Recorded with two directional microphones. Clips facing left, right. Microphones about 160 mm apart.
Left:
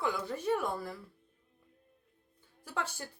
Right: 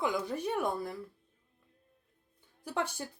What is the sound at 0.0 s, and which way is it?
Speech, 15° right (ahead or behind).